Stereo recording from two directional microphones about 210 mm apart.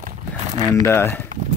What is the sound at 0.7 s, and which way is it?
Speech, 10° left (ahead or behind).